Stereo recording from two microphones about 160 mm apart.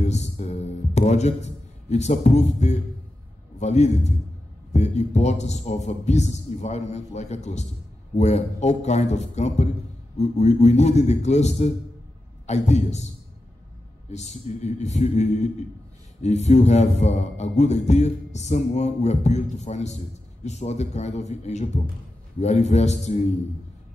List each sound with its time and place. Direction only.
0.0 s music: 45° left (ahead or behind)
3.5 s a man's voice: 45° left (ahead or behind)
14.1 s a man's voice: 45° left (ahead or behind)